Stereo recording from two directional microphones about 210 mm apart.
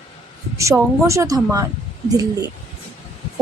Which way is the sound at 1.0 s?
15° right (ahead or behind).